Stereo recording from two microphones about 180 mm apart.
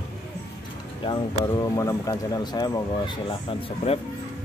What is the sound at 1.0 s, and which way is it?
Speech, 20° left (ahead or behind).